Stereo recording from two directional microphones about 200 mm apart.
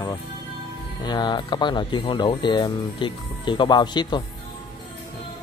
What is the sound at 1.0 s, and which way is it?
Speech, 20° left (ahead or behind).